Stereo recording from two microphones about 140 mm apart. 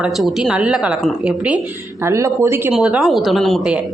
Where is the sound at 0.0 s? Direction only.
Centre (ahead or behind).